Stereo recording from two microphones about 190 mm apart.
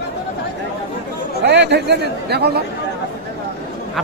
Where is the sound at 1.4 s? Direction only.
65° right (ahead or behind).